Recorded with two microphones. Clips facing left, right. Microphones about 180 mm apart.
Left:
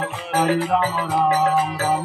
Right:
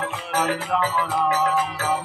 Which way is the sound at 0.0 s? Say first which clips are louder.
Left 3 dB; 35° left (ahead or behind).